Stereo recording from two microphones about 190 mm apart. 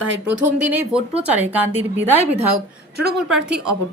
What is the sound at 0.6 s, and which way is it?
Speech, 10° right (ahead or behind).